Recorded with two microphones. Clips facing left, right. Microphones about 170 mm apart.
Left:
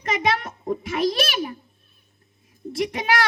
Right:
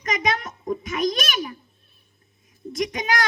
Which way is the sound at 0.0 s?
30° left (ahead or behind).